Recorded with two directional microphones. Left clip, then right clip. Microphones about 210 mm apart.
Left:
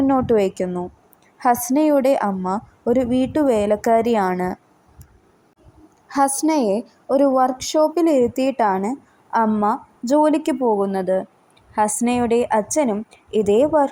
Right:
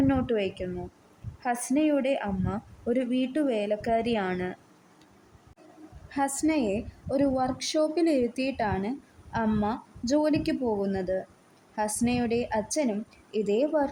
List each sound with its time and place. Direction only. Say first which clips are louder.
0.1 s a woman's voice: left 10 dB; 20° left (ahead or behind)
2.4 s speech: left 11 dB; 10° left (ahead or behind)
2.9 s a woman's voice: left 9 dB; 20° left (ahead or behind)
6.1 s a woman's voice: left 9 dB; 30° left (ahead or behind)
9.5 s a woman's voice: left 10 dB; 5° left (ahead or behind)